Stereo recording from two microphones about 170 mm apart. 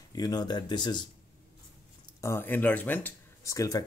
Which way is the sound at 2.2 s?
15° left (ahead or behind).